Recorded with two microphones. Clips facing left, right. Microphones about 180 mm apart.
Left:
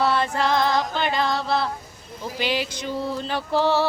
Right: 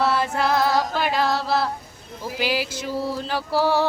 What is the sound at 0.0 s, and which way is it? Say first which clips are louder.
Female singing: even; 5° right (ahead or behind).